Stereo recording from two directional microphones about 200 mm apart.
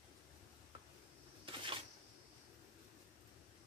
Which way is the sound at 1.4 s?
25° right (ahead or behind).